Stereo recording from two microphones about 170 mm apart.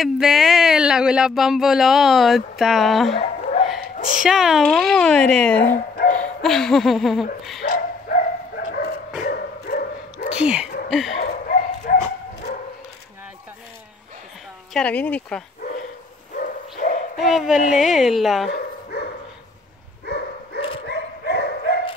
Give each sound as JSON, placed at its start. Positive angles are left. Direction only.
{"t": 0.0, "sound": "speech", "side_deg": 0}
{"t": 3.2, "sound": "a sound", "side_deg": 35}
{"t": 4.2, "sound": "speech", "side_deg": 0}
{"t": 7.6, "sound": "dog", "side_deg": 60}
{"t": 10.3, "sound": "speech", "side_deg": -5}
{"t": 10.9, "sound": "a sound", "side_deg": 0}
{"t": 11.2, "sound": "bow-wow", "side_deg": 55}
{"t": 14.7, "sound": "speech", "side_deg": 5}
{"t": 16.3, "sound": "bow-wow", "side_deg": 55}
{"t": 17.2, "sound": "speech", "side_deg": 0}
{"t": 18.5, "sound": "dog", "side_deg": 65}
{"t": 20.1, "sound": "dog", "side_deg": 70}